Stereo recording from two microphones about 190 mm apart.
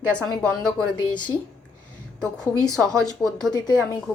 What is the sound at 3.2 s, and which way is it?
Speech, centre (ahead or behind).